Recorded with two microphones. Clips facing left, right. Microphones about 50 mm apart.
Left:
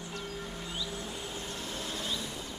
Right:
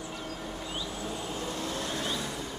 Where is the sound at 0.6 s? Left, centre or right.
Right.